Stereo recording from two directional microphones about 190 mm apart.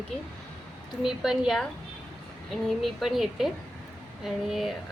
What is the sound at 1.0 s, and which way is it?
A woman's voice, 5° right (ahead or behind).